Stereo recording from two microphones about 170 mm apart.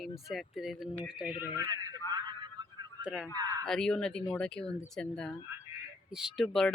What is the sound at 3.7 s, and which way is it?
Speech, 5° left (ahead or behind).